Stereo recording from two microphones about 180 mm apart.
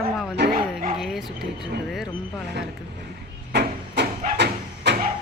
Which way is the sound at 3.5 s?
70° right (ahead or behind).